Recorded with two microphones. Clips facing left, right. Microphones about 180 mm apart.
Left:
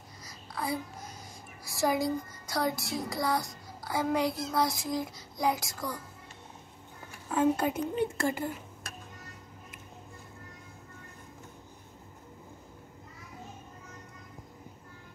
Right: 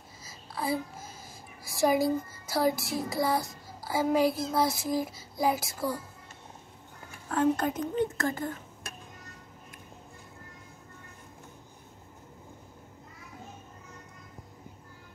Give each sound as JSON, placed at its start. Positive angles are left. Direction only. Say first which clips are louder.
{"t": 0.2, "sound": "babbling", "louder": "right 2 dB", "side_deg": -5}
{"t": 1.6, "sound": "a child's voice", "louder": "right 3 dB", "side_deg": 0}
{"t": 3.1, "sound": "child singing", "louder": "right 3 dB", "side_deg": 0}
{"t": 4.5, "sound": "a child's voice", "louder": "right 2 dB", "side_deg": -5}
{"t": 7.2, "sound": "a woman's voice", "louder": "even", "side_deg": 10}